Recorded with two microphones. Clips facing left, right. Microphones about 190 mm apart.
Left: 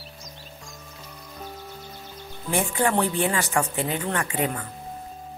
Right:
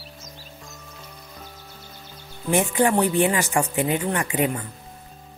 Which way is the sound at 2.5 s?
20° right (ahead or behind).